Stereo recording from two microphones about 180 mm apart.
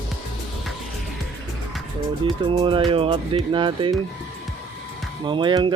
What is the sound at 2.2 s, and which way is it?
Speech, 30° right (ahead or behind).